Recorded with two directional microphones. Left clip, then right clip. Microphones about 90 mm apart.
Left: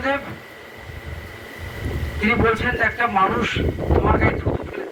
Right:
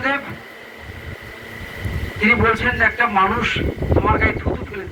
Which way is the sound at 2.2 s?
40° left (ahead or behind).